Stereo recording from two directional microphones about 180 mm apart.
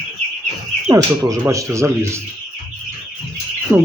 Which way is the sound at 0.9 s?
20° right (ahead or behind).